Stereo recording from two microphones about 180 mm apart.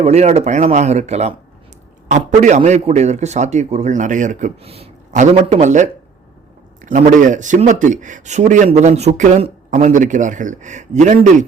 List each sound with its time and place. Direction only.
0.0 s a man's voice: 35° right (ahead or behind)